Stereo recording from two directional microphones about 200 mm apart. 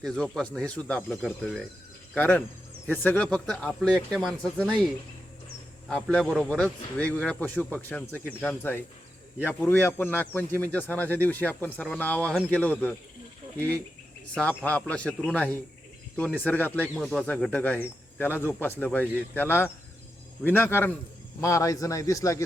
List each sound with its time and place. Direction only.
0.0 s a man's voice: 5° left (ahead or behind)
5.9 s a man's voice: 5° left (ahead or behind)
14.3 s a man's voice: 5° left (ahead or behind)